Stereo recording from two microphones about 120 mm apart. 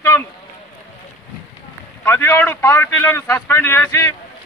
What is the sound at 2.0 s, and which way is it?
A man's voice, 20° left (ahead or behind).